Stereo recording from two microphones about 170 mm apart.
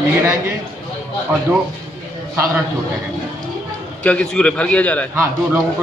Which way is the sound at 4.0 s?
5° left (ahead or behind).